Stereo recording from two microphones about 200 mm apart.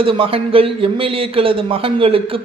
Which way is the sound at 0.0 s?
25° right (ahead or behind).